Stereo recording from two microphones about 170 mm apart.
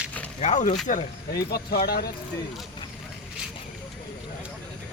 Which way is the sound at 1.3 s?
65° left (ahead or behind).